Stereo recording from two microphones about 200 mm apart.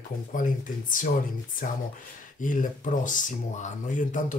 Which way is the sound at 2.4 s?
40° left (ahead or behind).